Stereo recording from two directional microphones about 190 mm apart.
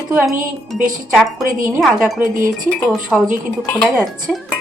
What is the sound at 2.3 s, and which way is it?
Speech, 45° right (ahead or behind).